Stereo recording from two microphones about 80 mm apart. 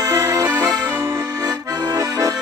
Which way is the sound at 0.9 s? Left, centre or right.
Right.